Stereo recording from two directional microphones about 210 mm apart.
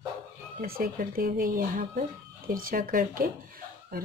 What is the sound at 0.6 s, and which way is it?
Speech, 45° right (ahead or behind).